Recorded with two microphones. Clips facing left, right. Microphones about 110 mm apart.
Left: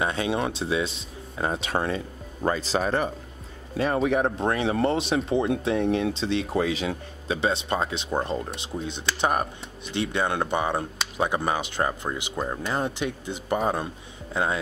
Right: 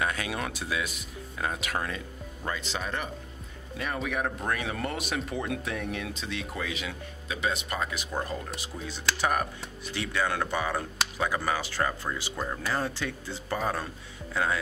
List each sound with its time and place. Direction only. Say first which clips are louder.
0.0 s speech: left 6 dB; 25° left (ahead or behind)